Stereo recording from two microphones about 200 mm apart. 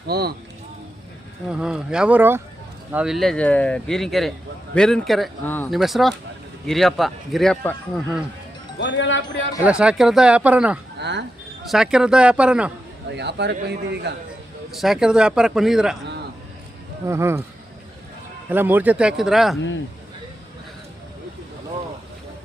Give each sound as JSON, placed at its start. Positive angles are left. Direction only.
{"t": 0.1, "sound": "speech", "side_deg": -50}
{"t": 1.5, "sound": "speech", "side_deg": -5}
{"t": 8.8, "sound": "speech", "side_deg": 60}
{"t": 9.6, "sound": "speech", "side_deg": -5}
{"t": 11.0, "sound": "a man's voice", "side_deg": -60}
{"t": 11.6, "sound": "speech", "side_deg": 0}
{"t": 13.1, "sound": "a man's voice", "side_deg": -60}
{"t": 14.7, "sound": "speech", "side_deg": 0}
{"t": 17.1, "sound": "speech", "side_deg": -15}
{"t": 18.4, "sound": "speech", "side_deg": -10}